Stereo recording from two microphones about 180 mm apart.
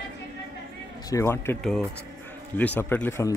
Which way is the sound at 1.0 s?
20° left (ahead or behind).